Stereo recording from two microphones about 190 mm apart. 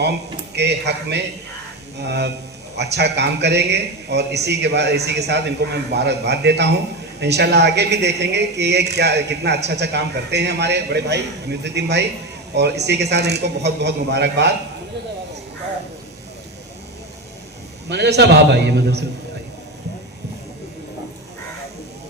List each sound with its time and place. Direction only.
0.5 s speech: 60° right (ahead or behind)
17.8 s speech: 65° right (ahead or behind)